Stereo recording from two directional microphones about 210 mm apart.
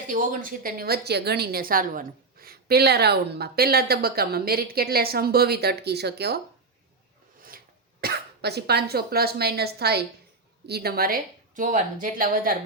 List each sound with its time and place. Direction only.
0.1 s a woman's voice: 40° right (ahead or behind)
8.0 s a woman's voice: 50° right (ahead or behind)